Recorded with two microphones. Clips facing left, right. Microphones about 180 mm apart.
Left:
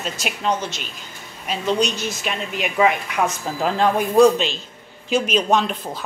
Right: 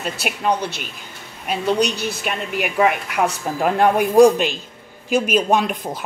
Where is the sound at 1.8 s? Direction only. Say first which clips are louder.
Right 2 dB; 60° right (ahead or behind).